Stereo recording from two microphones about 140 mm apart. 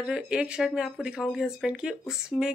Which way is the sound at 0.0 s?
5° right (ahead or behind).